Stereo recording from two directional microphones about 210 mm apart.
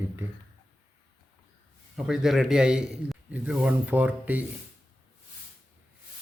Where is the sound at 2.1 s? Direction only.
Centre (ahead or behind).